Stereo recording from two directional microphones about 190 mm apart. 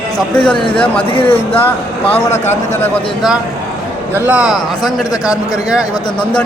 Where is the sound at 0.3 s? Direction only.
5° left (ahead or behind).